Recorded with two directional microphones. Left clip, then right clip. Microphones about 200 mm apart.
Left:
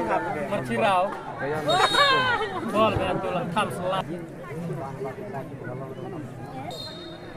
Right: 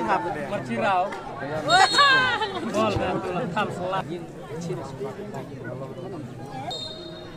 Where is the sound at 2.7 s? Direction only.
60° left (ahead or behind).